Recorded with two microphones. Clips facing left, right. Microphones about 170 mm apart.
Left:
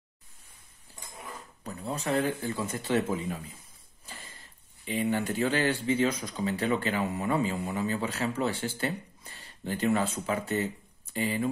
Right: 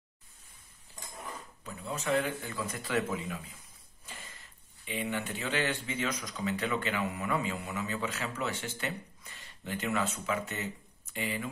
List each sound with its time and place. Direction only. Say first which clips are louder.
1.6 s speech: left 4 dB; 40° left (ahead or behind)
4.0 s a sound: left 1 dB; 35° left (ahead or behind)
4.8 s speech: left 6 dB; 35° left (ahead or behind)